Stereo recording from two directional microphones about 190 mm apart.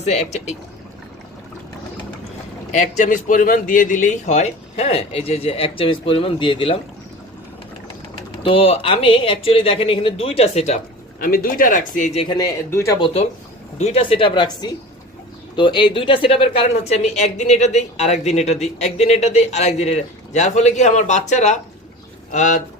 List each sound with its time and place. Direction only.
0.0 s a man's voice: 35° left (ahead or behind)
2.7 s a man's voice: 40° left (ahead or behind)
8.4 s speech: 30° left (ahead or behind)
11.2 s speech: 50° left (ahead or behind)
12.3 s speech: 15° left (ahead or behind)
13.7 s a man's voice: 35° left (ahead or behind)